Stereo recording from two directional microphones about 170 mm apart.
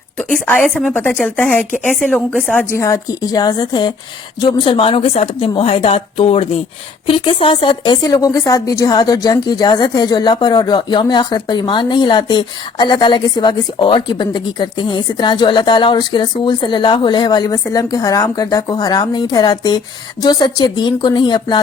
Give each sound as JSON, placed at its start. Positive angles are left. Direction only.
{"t": 0.2, "sound": "a woman's voice", "side_deg": 5}